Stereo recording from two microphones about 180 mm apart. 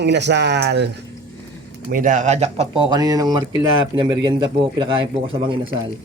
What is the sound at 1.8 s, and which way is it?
Speech, 50° right (ahead or behind).